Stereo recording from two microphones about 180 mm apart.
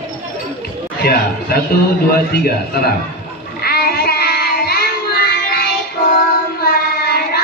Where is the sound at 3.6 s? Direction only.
60° left (ahead or behind).